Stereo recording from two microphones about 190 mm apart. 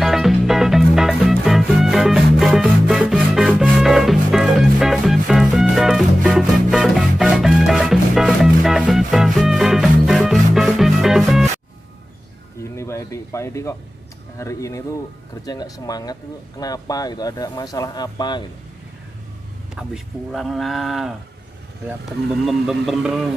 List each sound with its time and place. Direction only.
0.0 s music: centre (ahead or behind)
12.7 s music: 15° left (ahead or behind)
14.4 s speech: 15° left (ahead or behind)
19.7 s speech: 5° right (ahead or behind)
22.5 s speech: centre (ahead or behind)